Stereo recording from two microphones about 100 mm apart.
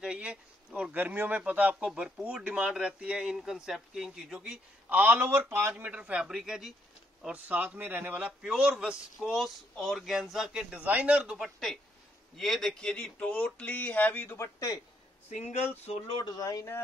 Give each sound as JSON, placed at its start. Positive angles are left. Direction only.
{"t": 0.0, "sound": "speech", "side_deg": -10}
{"t": 14.3, "sound": "speech", "side_deg": 30}
{"t": 15.2, "sound": "speech", "side_deg": 90}
{"t": 16.2, "sound": "speech", "side_deg": 40}